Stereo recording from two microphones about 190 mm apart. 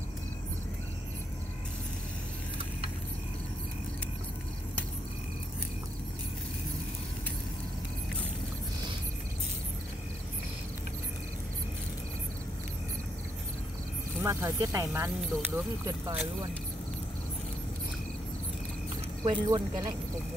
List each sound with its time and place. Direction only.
14.2 s speech: 15° right (ahead or behind)
14.9 s speech: 5° right (ahead or behind)
19.2 s speech: 20° right (ahead or behind)